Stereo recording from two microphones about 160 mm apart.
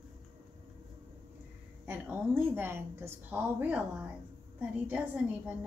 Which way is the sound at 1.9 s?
10° right (ahead or behind).